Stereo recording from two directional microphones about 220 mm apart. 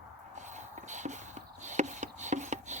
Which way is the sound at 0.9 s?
35° right (ahead or behind).